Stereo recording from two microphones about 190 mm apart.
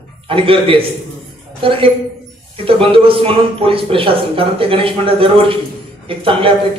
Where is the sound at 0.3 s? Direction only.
30° right (ahead or behind).